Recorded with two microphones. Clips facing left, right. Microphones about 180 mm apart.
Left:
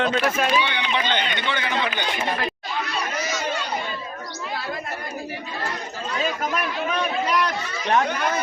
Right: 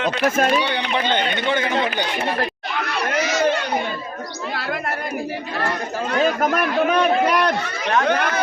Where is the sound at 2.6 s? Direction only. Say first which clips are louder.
Right 4 dB; 70° right (ahead or behind).